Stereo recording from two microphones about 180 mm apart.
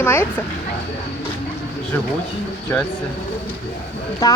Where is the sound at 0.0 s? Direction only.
10° left (ahead or behind).